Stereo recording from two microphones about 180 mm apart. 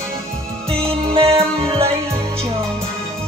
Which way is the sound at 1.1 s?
30° right (ahead or behind).